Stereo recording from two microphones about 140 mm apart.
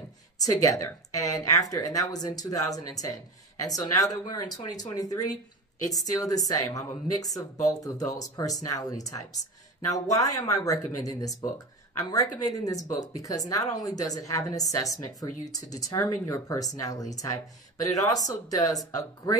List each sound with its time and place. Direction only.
0.4 s speech: 25° left (ahead or behind)